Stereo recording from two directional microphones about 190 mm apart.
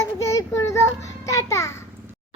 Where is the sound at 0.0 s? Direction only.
15° left (ahead or behind).